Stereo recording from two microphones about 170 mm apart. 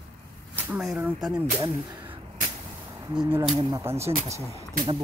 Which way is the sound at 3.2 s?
10° right (ahead or behind).